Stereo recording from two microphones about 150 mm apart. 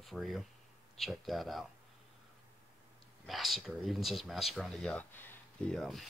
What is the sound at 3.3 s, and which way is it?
Speech, centre (ahead or behind).